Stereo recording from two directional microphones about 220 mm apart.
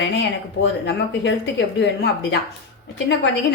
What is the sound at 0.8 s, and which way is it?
A woman's voice, 55° left (ahead or behind).